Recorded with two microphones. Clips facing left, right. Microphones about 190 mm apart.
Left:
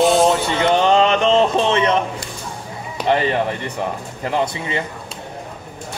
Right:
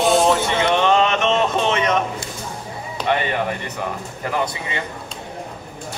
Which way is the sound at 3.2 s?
30° left (ahead or behind).